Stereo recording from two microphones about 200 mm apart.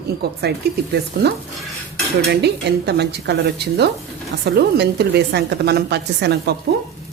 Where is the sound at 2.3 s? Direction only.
55° right (ahead or behind).